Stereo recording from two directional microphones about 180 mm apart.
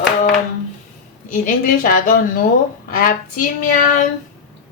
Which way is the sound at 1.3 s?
45° left (ahead or behind).